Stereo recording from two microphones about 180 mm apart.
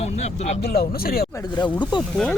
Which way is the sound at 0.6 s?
60° left (ahead or behind).